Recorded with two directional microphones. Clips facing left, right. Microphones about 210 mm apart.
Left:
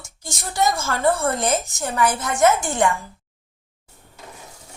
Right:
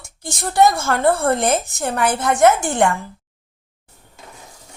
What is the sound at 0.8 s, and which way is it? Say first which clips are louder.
A woman's voice: right 3 dB; 50° right (ahead or behind).